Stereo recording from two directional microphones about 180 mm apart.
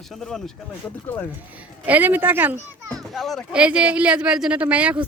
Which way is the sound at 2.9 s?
Centre (ahead or behind).